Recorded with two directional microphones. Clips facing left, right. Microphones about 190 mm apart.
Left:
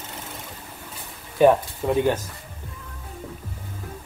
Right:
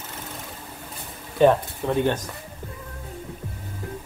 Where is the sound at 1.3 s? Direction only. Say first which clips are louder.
Left 1 dB; 10° left (ahead or behind).